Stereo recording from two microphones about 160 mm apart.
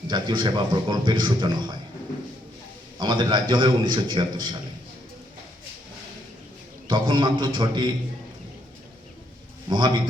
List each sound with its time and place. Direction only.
0.1 s a man's voice: 30° right (ahead or behind)
3.0 s a man's voice: 25° right (ahead or behind)
6.8 s a man's voice: 30° right (ahead or behind)
9.6 s a man's voice: 30° right (ahead or behind)